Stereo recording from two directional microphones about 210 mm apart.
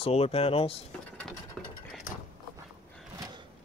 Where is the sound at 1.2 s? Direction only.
5° left (ahead or behind).